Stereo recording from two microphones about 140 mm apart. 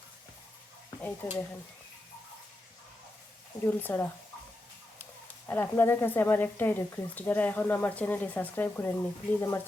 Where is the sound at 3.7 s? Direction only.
15° left (ahead or behind).